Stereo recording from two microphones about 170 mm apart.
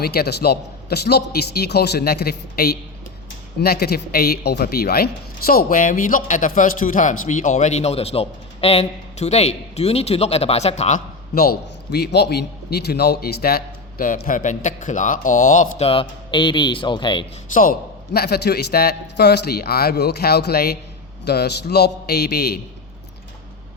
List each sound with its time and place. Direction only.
0.0 s a man's voice: 65° left (ahead or behind); by 11.0 s 40° left (ahead or behind)
11.3 s a man's voice: 70° left (ahead or behind); by 15.7 s 50° left (ahead or behind)
15.8 s speech: 35° left (ahead or behind)
17.5 s a man's voice: 55° left (ahead or behind)